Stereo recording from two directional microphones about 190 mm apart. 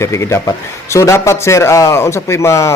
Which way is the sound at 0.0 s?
15° left (ahead or behind).